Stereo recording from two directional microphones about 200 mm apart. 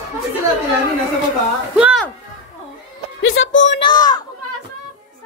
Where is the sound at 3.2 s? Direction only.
75° left (ahead or behind).